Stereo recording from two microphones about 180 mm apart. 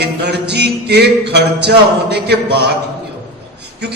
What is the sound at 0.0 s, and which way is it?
Music, 65° right (ahead or behind).